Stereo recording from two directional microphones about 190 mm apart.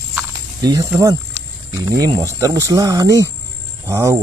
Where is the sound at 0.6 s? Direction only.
20° right (ahead or behind).